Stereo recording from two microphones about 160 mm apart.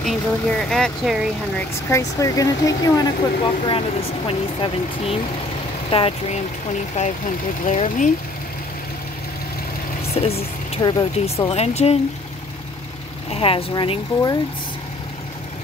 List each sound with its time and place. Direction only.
0.0 s speech: 5° left (ahead or behind)
1.9 s speech: 20° left (ahead or behind); by 6.4 s 35° left (ahead or behind)
7.0 s speech: 45° left (ahead or behind)
10.1 s a sound: 40° left (ahead or behind)
10.8 s speech: 25° left (ahead or behind)
11.4 s speech: 40° left (ahead or behind)
13.3 s speech: 35° left (ahead or behind)